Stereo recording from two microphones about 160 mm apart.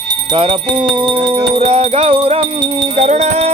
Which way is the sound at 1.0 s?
35° right (ahead or behind).